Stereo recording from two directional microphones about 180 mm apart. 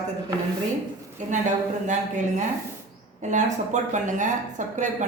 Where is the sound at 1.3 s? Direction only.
40° right (ahead or behind).